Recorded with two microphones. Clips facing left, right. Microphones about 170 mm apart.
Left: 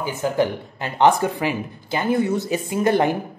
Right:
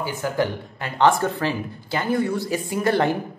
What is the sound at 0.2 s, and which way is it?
Speech, 20° left (ahead or behind).